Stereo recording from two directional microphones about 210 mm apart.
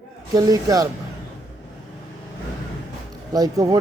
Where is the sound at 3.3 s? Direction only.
15° right (ahead or behind).